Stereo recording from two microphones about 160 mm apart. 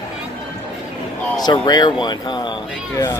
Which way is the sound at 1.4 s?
25° left (ahead or behind).